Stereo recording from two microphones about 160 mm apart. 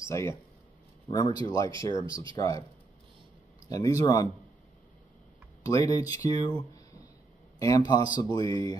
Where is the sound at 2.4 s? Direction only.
20° left (ahead or behind).